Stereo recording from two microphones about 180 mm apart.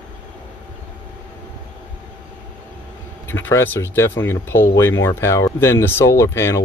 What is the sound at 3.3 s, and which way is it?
Speech, 15° left (ahead or behind).